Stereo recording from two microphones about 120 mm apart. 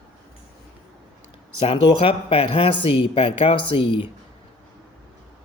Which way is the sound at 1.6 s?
50° left (ahead or behind).